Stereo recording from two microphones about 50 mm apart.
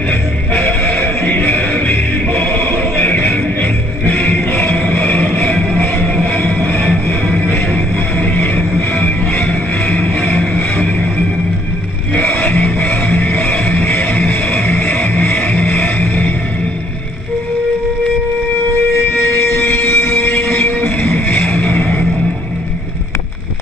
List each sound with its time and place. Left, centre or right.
1.0 s music: left
6.7 s music: left
7.7 s music: left
12.2 s vehicle: left
13.0 s music: left
19.1 s train: left